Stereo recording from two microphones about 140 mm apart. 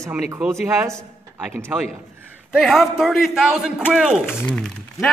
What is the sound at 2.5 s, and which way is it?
Speech, centre (ahead or behind).